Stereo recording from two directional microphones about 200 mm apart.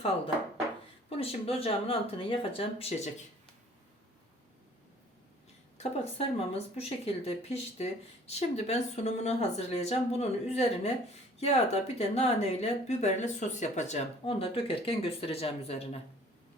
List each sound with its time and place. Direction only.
1.1 s speech: 30° left (ahead or behind)
5.7 s speech: 30° left (ahead or behind)